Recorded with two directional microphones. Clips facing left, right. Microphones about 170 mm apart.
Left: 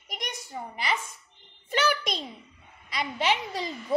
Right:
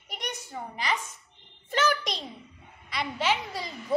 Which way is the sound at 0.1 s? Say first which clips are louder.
Right 1 dB; 15° left (ahead or behind).